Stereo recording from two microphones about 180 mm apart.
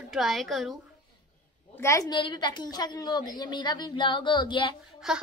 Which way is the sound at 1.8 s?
15° left (ahead or behind).